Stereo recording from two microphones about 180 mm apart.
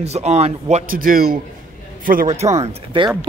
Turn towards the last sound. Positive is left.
turn(degrees=-30)  # may be behind; listen again after turning